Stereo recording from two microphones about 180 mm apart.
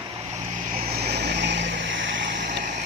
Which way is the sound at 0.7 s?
55° right (ahead or behind).